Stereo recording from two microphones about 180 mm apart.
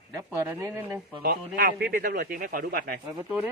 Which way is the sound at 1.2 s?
55° right (ahead or behind).